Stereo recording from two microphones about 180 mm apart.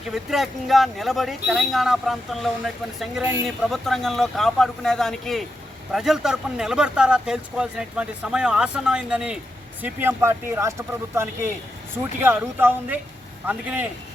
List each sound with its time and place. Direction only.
0.1 s speech: centre (ahead or behind)